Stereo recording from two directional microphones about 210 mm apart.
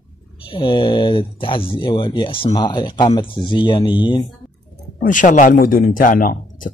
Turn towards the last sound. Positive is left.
turn(degrees=40)  # may be behind; listen again after turning